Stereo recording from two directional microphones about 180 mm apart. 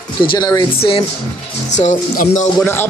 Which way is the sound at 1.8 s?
40° left (ahead or behind).